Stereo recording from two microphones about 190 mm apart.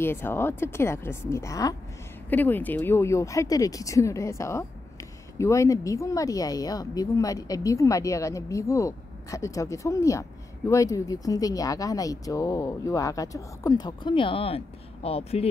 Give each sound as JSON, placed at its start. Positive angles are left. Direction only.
{"t": 0.0, "sound": "speech", "side_deg": 10}